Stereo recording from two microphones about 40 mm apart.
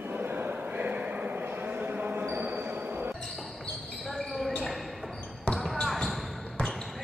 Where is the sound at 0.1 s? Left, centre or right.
Right.